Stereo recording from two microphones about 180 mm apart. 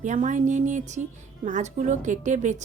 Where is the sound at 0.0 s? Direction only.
45° right (ahead or behind).